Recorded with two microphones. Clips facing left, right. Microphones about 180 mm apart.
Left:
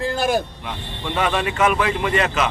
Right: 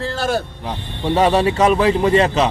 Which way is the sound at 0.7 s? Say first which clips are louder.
Right 8 dB; 35° right (ahead or behind).